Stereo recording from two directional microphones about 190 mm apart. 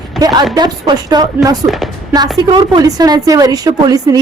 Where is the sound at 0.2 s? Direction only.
20° right (ahead or behind).